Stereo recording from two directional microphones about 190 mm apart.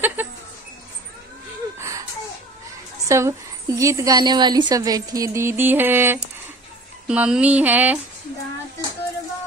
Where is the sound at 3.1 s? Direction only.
15° right (ahead or behind).